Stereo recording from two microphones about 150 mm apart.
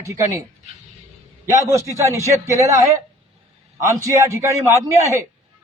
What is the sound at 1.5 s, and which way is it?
A man's voice, 20° right (ahead or behind).